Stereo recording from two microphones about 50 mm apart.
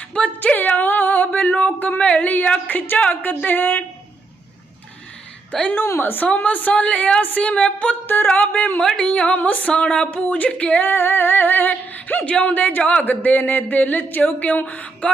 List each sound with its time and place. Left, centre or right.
0.3 s a sound: left
2.2 s speech: left
5.5 s a woman's voice: left
6.0 s a woman's voice: left
8.0 s music: left
8.3 s speech: left
8.8 s a sound: centre
9.0 s a woman's voice: left
9.7 s a woman's voice: centre
10.2 s speech: left
10.8 s speech: left